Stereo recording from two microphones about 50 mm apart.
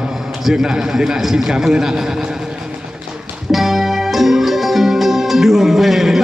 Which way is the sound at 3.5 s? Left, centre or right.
Centre.